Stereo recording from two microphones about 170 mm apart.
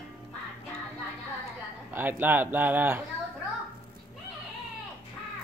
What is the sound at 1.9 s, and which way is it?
Speech, 10° right (ahead or behind).